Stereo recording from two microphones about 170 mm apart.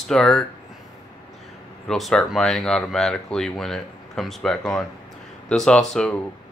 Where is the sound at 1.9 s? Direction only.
Centre (ahead or behind).